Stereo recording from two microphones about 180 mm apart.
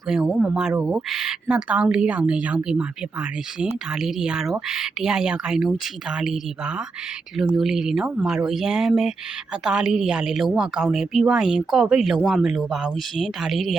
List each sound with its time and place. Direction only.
0.1 s speech: centre (ahead or behind)